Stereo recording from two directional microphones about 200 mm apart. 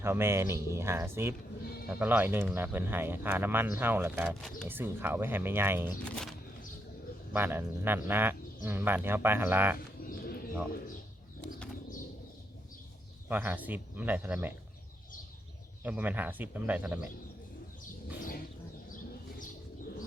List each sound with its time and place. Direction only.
0.0 s speech: 10° right (ahead or behind)
4.4 s speech: centre (ahead or behind)
4.7 s speech: 10° right (ahead or behind)
6.1 s speech: 5° left (ahead or behind)
7.3 s speech: 10° right (ahead or behind)
10.0 s bird: 50° left (ahead or behind)
13.2 s speech: 10° right (ahead or behind)
15.8 s speech: 10° right (ahead or behind)